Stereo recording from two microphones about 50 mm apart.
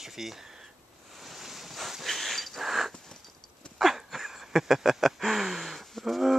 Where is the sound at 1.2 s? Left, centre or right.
Centre.